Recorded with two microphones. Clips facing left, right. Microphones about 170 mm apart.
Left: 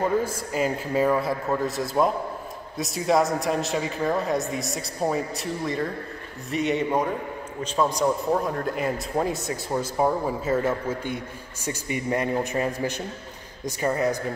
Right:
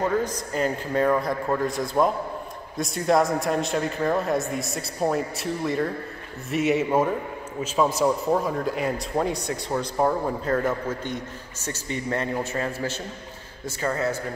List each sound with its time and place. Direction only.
0.0 s a man's voice: 5° left (ahead or behind)